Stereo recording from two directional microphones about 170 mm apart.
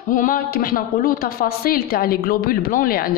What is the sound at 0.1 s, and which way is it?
A woman's voice, 50° left (ahead or behind).